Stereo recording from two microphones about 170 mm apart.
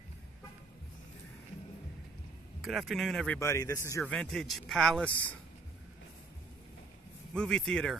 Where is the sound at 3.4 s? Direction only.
20° left (ahead or behind).